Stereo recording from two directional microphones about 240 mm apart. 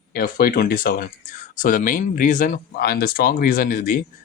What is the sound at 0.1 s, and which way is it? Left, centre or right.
Speech, left.